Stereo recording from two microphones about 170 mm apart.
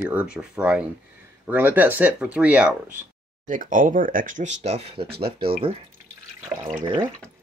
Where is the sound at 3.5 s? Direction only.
50° right (ahead or behind).